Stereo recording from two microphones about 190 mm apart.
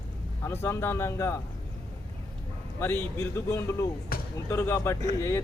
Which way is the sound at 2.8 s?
15° left (ahead or behind).